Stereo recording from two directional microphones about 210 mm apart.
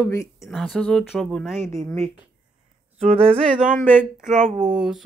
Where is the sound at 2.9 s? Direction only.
30° right (ahead or behind).